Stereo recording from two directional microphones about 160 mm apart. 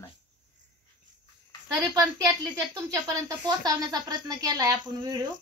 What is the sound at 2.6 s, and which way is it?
Speech, 20° right (ahead or behind).